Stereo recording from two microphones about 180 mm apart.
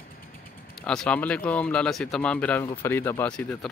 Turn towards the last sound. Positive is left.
turn(degrees=5)  # may be behind; listen again after turning